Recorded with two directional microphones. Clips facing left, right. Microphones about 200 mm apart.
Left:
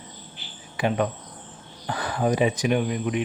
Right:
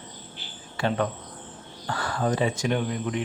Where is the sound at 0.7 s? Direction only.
15° left (ahead or behind).